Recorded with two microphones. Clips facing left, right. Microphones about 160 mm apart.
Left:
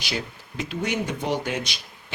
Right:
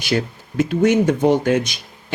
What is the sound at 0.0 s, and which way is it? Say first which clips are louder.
Speech: right 10 dB; 50° right (ahead or behind).